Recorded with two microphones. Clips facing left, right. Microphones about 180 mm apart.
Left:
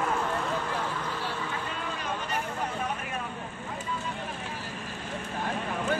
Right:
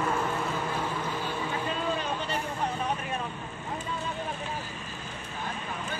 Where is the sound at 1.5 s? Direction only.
25° right (ahead or behind).